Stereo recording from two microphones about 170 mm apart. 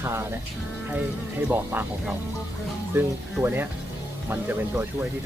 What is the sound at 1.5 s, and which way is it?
Speech, 10° right (ahead or behind).